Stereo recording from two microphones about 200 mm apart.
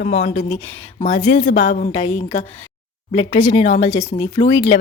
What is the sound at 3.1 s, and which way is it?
Speech, 35° left (ahead or behind).